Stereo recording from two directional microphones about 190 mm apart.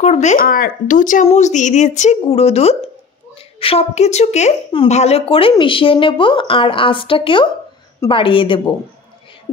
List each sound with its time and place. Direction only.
0.0 s a woman's voice: 35° left (ahead or behind)